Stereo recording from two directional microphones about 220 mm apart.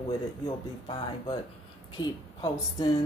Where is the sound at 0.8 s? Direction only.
20° left (ahead or behind).